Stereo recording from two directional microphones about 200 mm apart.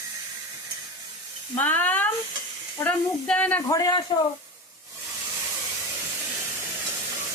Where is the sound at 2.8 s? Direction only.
10° left (ahead or behind).